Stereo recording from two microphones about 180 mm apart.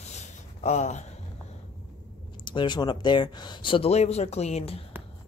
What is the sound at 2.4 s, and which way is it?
Speech, 25° left (ahead or behind).